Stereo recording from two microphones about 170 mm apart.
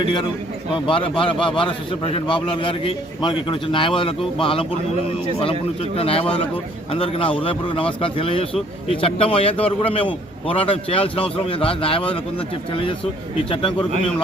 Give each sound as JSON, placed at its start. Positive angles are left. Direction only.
{"t": 0.0, "sound": "a man's voice", "side_deg": 30}
{"t": 6.0, "sound": "a man's voice", "side_deg": 35}
{"t": 13.5, "sound": "a man's voice", "side_deg": 30}